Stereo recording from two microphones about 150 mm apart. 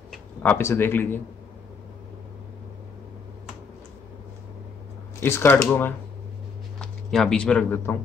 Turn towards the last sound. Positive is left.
turn(degrees=15)  # may be behind; listen again after turning